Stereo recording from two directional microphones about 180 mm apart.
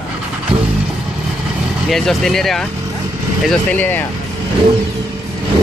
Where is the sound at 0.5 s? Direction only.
30° right (ahead or behind).